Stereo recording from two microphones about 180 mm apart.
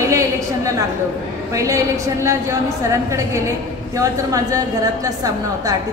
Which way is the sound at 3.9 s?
20° right (ahead or behind).